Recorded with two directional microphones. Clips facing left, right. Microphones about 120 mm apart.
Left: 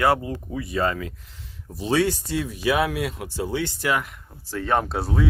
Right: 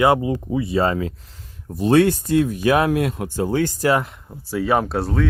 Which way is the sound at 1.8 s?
55° right (ahead or behind).